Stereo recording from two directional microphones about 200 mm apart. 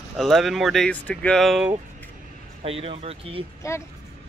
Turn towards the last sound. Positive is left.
turn(degrees=15)  # may be behind; listen again after turning